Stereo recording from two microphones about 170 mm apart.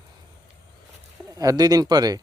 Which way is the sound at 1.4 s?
20° right (ahead or behind).